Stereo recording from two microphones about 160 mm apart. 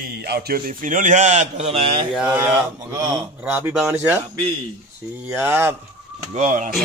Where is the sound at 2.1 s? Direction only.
10° right (ahead or behind).